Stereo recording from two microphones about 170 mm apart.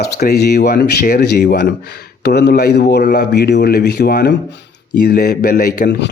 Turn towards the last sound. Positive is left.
turn(degrees=65)  # may be behind; listen again after turning